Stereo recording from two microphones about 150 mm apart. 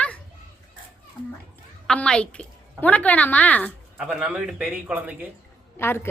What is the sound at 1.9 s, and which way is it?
A woman's voice, 5° left (ahead or behind).